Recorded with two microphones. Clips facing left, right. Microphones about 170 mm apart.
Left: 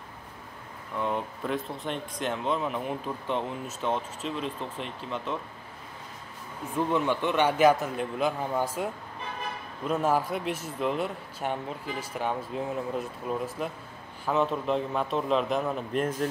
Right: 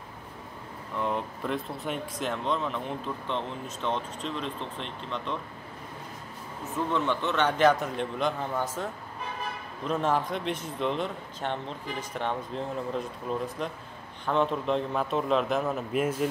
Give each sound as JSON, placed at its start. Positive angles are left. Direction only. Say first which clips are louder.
{"t": 0.9, "sound": "speech", "louder": "even", "side_deg": 0}
{"t": 6.9, "sound": "a man's voice", "louder": "left 1 dB", "side_deg": 10}